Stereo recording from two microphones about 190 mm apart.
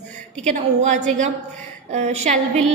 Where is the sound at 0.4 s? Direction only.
40° right (ahead or behind).